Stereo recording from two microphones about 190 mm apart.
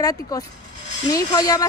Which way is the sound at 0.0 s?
20° left (ahead or behind).